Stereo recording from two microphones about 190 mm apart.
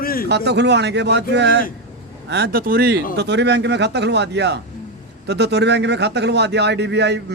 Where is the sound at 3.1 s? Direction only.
65° right (ahead or behind).